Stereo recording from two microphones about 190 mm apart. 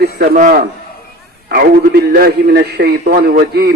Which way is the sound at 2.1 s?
50° right (ahead or behind).